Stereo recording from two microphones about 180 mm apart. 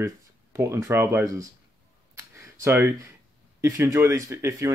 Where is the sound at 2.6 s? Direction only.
15° right (ahead or behind).